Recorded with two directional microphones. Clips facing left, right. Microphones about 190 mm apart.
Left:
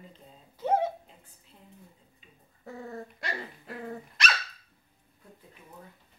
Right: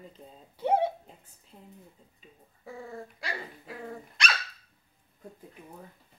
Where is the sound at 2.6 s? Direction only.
Centre (ahead or behind).